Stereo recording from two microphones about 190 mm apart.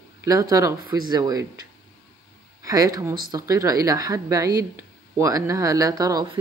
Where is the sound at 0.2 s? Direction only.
15° right (ahead or behind).